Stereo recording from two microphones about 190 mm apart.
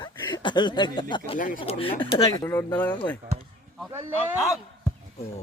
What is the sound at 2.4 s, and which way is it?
Speech, 15° left (ahead or behind).